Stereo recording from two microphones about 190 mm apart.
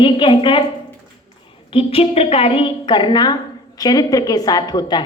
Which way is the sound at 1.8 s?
30° left (ahead or behind).